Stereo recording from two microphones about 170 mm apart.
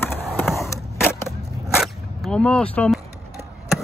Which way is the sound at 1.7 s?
Centre (ahead or behind).